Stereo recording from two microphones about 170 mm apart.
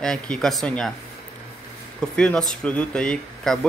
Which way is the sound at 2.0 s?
5° left (ahead or behind).